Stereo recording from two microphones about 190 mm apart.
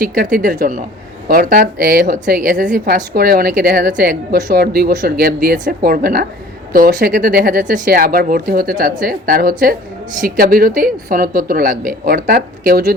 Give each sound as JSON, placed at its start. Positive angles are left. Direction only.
{"t": 0.0, "sound": "a woman's voice", "side_deg": -45}